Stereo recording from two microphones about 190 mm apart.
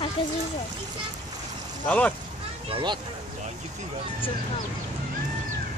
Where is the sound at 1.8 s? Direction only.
5° left (ahead or behind).